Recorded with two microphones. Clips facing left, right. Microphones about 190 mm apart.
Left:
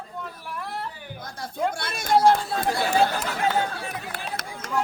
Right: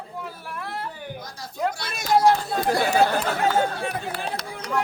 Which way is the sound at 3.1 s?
55° right (ahead or behind).